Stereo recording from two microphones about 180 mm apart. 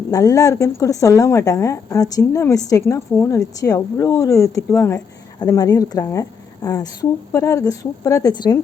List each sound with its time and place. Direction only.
0.1 s speech: 20° left (ahead or behind)